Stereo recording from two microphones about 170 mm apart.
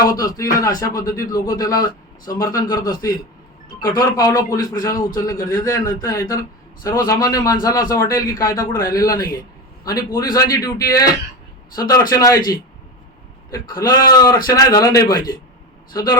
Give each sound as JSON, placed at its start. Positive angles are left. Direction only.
{"t": 0.0, "sound": "a sound", "side_deg": 20}
{"t": 1.0, "sound": "a man's voice", "side_deg": 20}
{"t": 13.5, "sound": "a man's voice", "side_deg": 25}